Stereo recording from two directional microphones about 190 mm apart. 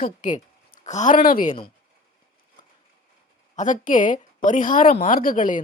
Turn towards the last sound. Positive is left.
turn(degrees=45)  # may be behind; listen again after turning